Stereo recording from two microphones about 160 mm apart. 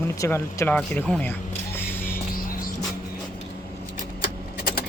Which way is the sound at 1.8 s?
15° left (ahead or behind).